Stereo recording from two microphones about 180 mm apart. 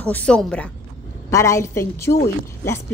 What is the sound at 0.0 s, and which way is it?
Speech, 5° left (ahead or behind).